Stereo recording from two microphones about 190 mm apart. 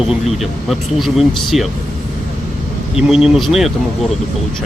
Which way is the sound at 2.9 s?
5° right (ahead or behind).